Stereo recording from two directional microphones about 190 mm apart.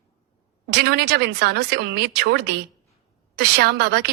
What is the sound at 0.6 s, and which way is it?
Speech, 60° right (ahead or behind).